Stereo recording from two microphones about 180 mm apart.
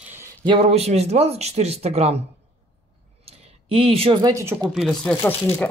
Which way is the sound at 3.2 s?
30° right (ahead or behind).